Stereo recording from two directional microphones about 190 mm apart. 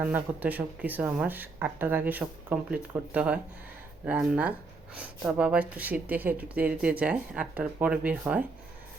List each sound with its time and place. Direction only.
0.0 s speech: 10° right (ahead or behind)